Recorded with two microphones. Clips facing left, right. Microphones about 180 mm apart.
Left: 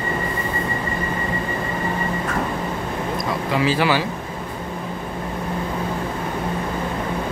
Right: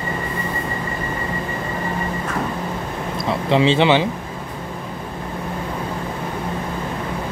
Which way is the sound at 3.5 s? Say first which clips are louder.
Right 5 dB; 25° right (ahead or behind).